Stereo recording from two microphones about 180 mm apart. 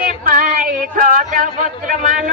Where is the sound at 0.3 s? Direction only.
50° right (ahead or behind).